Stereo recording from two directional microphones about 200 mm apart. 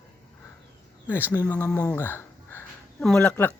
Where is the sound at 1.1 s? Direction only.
10° left (ahead or behind).